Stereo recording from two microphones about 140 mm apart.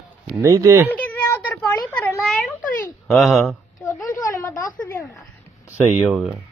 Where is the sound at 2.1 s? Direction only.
Centre (ahead or behind).